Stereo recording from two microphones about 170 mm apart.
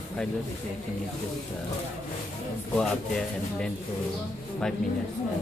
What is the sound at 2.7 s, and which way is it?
Speech, 5° left (ahead or behind).